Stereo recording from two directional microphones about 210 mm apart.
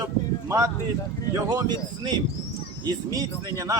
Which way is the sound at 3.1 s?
15° right (ahead or behind).